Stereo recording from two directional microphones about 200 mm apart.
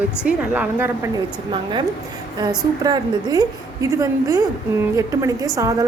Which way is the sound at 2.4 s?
20° right (ahead or behind).